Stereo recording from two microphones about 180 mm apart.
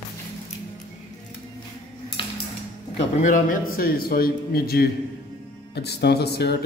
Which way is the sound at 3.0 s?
45° left (ahead or behind).